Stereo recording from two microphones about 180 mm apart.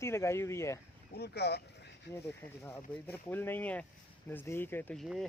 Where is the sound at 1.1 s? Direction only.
65° left (ahead or behind).